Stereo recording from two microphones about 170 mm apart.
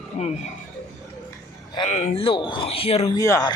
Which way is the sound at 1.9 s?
45° left (ahead or behind).